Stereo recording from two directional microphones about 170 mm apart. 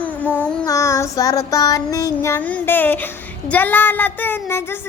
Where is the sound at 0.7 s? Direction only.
20° left (ahead or behind).